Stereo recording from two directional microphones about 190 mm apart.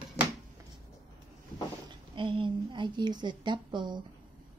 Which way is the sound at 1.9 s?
25° right (ahead or behind).